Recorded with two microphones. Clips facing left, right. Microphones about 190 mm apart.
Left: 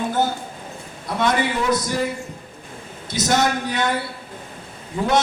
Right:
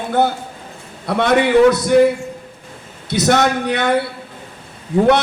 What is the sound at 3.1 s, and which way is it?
Speech, 60° right (ahead or behind).